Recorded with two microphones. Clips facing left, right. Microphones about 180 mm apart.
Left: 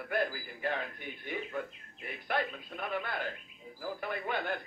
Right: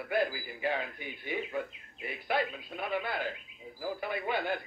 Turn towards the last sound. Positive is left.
turn(degrees=-5)  # may be behind; listen again after turning